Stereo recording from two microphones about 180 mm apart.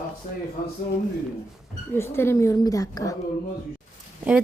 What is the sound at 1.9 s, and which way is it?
Speech, 15° left (ahead or behind).